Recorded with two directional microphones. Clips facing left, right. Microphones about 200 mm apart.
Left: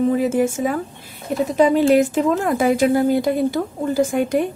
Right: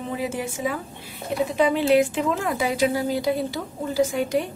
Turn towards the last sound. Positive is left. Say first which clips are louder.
# left 4 dB
turn(degrees=50)  # may be behind; listen again after turning